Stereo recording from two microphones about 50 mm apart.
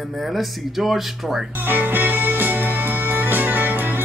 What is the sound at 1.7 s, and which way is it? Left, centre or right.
Music, right.